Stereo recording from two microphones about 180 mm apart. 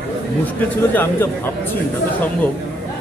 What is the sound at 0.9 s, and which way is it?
Speech, 10° left (ahead or behind).